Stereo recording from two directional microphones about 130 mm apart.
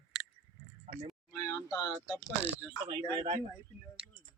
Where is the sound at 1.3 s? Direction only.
25° left (ahead or behind).